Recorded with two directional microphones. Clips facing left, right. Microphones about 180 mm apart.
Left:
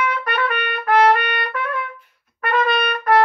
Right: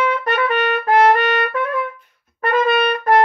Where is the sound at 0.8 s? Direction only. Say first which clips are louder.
Even; 25° right (ahead or behind).